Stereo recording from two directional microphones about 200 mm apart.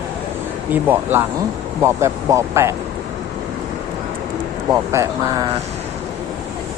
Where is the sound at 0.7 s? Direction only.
10° right (ahead or behind).